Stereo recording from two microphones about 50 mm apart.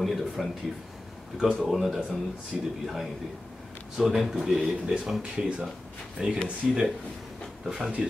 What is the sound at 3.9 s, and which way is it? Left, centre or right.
Speech, centre.